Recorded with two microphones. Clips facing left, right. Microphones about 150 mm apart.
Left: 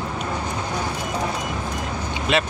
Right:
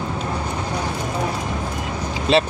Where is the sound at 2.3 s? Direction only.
30° right (ahead or behind).